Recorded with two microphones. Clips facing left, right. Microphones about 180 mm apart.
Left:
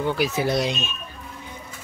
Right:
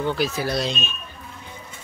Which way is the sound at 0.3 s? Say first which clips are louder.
Left 2 dB; 20° left (ahead or behind).